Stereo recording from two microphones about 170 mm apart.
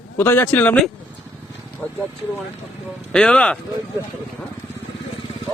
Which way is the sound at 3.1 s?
5° left (ahead or behind).